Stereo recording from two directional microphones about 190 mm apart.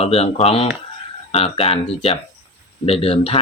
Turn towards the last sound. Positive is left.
turn(degrees=30)  # may be behind; listen again after turning